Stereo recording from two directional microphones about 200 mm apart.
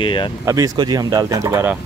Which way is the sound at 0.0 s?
25° left (ahead or behind).